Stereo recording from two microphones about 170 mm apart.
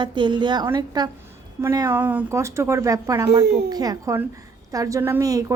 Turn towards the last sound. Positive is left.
turn(degrees=-20)  # may be behind; listen again after turning